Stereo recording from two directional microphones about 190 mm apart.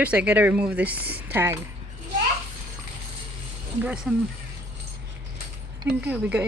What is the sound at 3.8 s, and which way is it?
Speech, 5° right (ahead or behind).